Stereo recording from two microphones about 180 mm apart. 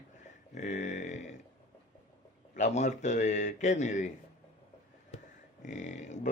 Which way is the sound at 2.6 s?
40° left (ahead or behind).